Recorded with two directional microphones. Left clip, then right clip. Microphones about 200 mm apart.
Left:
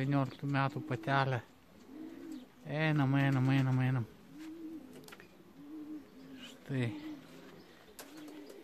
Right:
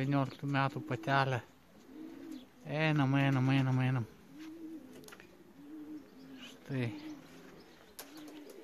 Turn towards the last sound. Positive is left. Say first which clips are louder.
# left 1 dB
turn(degrees=0)  # may be behind; listen again after turning